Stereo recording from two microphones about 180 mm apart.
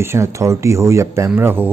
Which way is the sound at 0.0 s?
15° right (ahead or behind).